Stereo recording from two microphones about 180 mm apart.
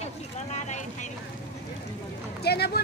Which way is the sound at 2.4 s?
65° left (ahead or behind).